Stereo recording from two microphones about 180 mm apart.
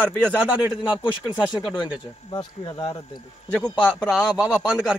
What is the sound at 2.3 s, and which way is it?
Speech, 30° left (ahead or behind).